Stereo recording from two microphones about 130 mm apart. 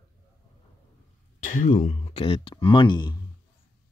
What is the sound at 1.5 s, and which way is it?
Speech, 70° left (ahead or behind).